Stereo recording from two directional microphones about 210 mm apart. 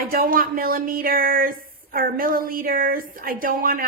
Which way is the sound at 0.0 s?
45° right (ahead or behind).